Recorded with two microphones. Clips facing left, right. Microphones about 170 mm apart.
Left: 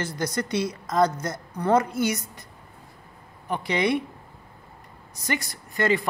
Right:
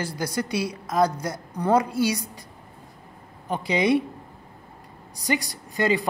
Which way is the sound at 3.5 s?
15° right (ahead or behind).